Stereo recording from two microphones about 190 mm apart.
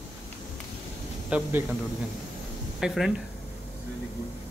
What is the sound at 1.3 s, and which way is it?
Speech, 10° right (ahead or behind).